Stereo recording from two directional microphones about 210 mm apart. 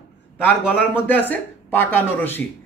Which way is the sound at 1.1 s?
10° left (ahead or behind).